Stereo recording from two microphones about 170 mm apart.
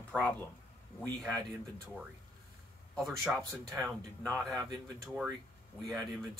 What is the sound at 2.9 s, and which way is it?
Speech, centre (ahead or behind).